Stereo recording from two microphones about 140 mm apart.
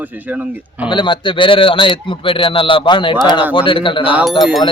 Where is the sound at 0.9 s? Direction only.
35° left (ahead or behind).